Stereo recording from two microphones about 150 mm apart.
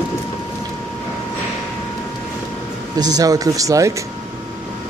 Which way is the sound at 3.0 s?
25° right (ahead or behind).